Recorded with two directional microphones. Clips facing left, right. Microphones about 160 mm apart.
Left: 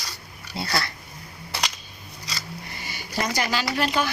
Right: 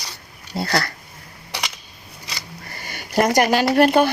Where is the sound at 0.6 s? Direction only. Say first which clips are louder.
Right 5 dB; 50° right (ahead or behind).